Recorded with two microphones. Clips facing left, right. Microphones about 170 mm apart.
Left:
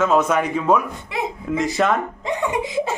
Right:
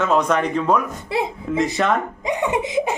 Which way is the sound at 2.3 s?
15° right (ahead or behind).